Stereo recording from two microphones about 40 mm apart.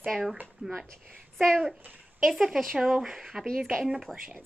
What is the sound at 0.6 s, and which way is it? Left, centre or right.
Speech, right.